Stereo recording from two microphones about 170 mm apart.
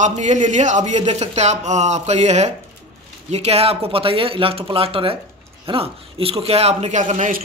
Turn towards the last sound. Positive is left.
turn(degrees=-50)  # may be behind; listen again after turning